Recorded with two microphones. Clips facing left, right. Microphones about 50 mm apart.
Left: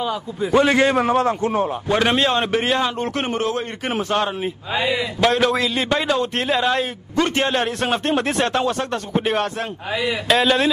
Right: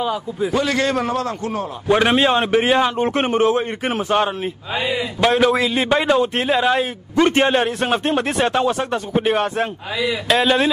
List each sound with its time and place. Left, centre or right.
0.0 s speech: centre
0.6 s a man's voice: left
1.9 s a man's voice: centre
3.9 s a man's voice: centre
4.7 s speech: left
5.2 s a man's voice: centre
7.2 s a man's voice: centre
7.6 s speech: centre